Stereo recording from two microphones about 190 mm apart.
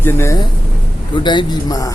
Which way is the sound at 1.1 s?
25° left (ahead or behind).